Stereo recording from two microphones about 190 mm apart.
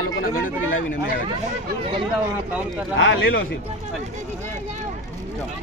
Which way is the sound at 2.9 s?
80° left.